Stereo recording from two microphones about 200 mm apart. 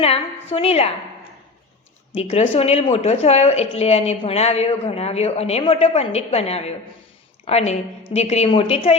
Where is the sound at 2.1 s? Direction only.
30° left (ahead or behind).